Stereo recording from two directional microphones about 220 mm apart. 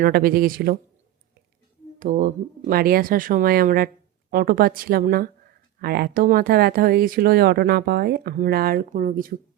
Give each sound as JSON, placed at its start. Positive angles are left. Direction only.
{"t": 0.0, "sound": "speech", "side_deg": -45}
{"t": 2.0, "sound": "speech", "side_deg": -40}